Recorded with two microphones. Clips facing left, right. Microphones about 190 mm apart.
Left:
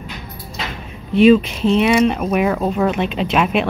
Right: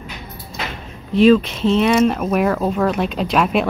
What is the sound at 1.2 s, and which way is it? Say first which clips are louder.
Speech: left 1 dB; 5° left (ahead or behind).